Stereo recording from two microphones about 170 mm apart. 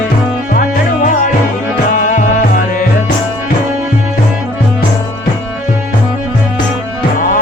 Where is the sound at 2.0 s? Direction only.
50° left (ahead or behind).